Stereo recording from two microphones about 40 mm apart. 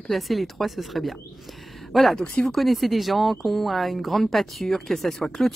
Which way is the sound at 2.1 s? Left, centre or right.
Centre.